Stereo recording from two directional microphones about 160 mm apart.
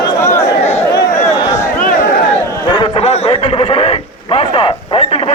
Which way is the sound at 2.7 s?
35° left (ahead or behind).